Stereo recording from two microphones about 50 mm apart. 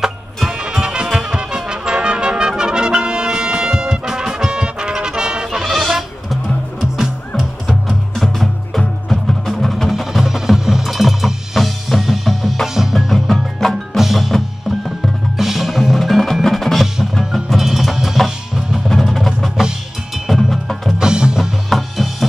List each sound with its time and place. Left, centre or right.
0.0 s music: centre
14.0 s percussion: centre
15.3 s wood block: centre
17.2 s music: centre
21.0 s music: centre
21.6 s music: centre